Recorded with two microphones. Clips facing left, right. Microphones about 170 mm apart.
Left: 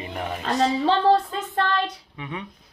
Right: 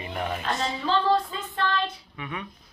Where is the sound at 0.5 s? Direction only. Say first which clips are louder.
Left 8 dB; 70° left (ahead or behind).